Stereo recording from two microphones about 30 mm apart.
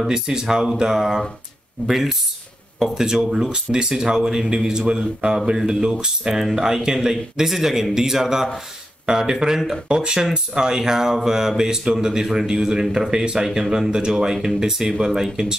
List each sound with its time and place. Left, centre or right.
0.1 s a man's voice: right